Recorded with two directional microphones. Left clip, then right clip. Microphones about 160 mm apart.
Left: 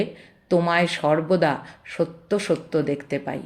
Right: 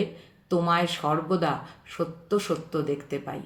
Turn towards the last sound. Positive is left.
turn(degrees=45)  # may be behind; listen again after turning